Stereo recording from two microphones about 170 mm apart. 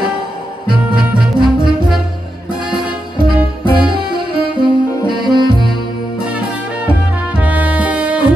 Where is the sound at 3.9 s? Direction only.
30° right (ahead or behind).